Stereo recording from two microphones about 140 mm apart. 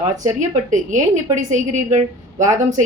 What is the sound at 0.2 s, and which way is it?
A woman's voice, 60° right (ahead or behind).